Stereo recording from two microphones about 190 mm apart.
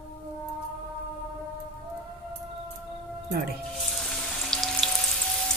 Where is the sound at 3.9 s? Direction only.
Centre (ahead or behind).